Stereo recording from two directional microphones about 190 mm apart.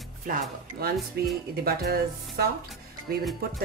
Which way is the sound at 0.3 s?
55° right (ahead or behind).